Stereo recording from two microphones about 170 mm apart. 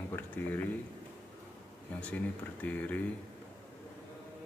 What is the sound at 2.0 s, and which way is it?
Speech, 10° left (ahead or behind).